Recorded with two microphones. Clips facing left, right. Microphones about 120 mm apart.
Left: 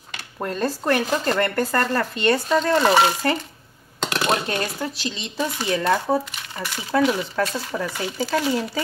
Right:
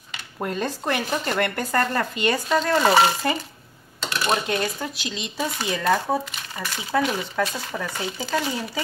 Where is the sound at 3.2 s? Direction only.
5° right (ahead or behind).